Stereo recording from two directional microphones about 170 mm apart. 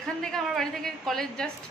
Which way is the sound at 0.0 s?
5° left (ahead or behind).